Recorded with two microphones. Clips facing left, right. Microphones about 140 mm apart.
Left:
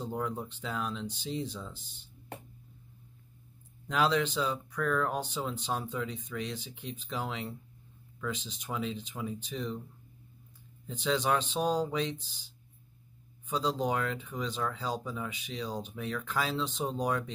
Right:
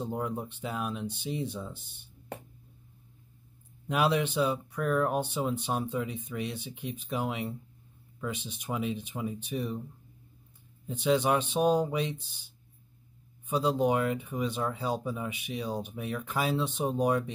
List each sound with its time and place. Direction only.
0.0 s speech: 15° right (ahead or behind)
3.8 s speech: 15° right (ahead or behind)
8.6 s speech: 15° right (ahead or behind)
10.9 s speech: 15° right (ahead or behind)
13.5 s speech: 15° right (ahead or behind)